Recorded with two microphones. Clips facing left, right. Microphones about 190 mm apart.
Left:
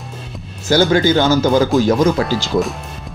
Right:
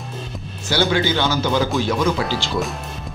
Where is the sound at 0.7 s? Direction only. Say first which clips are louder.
Left 6 dB; 45° left (ahead or behind).